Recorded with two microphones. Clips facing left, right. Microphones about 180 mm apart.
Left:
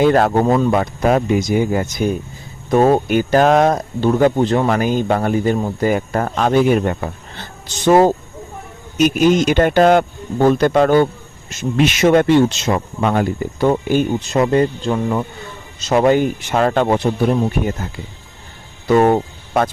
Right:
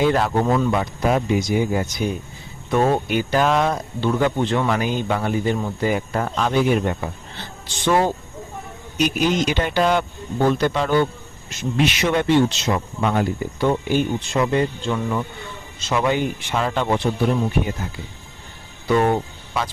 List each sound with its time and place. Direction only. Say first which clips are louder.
0.0 s speech: left 5 dB; 50° left (ahead or behind)
2.6 s speech: left 6 dB; 40° left (ahead or behind)
18.9 s speech: left 5 dB; 45° left (ahead or behind)